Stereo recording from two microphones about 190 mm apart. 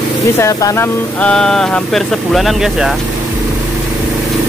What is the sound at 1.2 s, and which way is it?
Speech, 5° left (ahead or behind).